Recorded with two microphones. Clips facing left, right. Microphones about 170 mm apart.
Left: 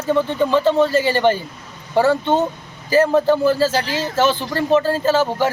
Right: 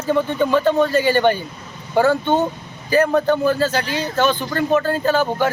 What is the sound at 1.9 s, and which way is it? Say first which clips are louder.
Speech: even; centre (ahead or behind).